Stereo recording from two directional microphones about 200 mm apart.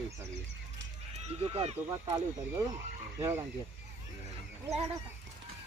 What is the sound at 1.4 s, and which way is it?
Speech, 30° right (ahead or behind).